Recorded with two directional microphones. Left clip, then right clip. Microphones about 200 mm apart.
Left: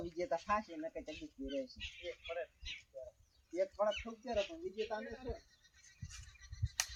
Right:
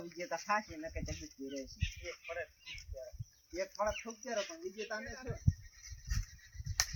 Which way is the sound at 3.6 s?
15° right (ahead or behind).